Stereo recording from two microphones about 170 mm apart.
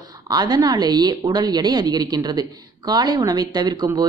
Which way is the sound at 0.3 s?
25° right (ahead or behind).